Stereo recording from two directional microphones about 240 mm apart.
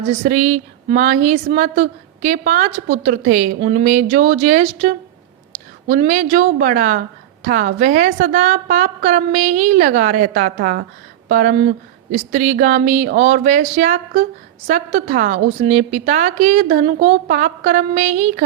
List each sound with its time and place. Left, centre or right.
0.3 s a woman's voice: right